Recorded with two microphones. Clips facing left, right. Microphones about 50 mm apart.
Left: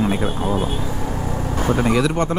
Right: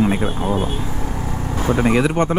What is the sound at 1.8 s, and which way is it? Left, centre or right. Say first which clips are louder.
Speech: right 4 dB; right.